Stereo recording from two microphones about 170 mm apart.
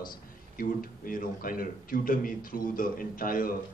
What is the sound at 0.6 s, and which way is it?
A man's voice, 55° left (ahead or behind).